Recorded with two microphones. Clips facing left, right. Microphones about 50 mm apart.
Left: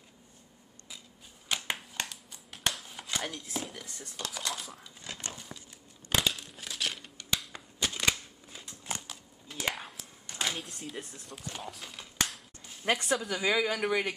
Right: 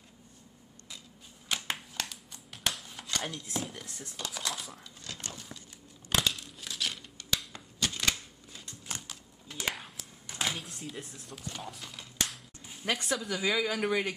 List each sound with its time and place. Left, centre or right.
1.5 s a sound: centre
3.1 s chopping: centre
3.4 s speech: centre
5.0 s dog: left
6.0 s crumpling: centre
7.8 s typewriter: centre
8.9 s computer keyboard: centre
10.2 s speech: centre